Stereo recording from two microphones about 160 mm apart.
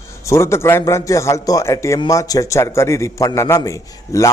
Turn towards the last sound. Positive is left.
turn(degrees=20)  # may be behind; listen again after turning